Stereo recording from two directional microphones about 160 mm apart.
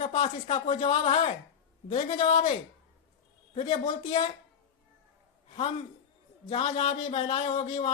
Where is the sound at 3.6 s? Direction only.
45° left (ahead or behind).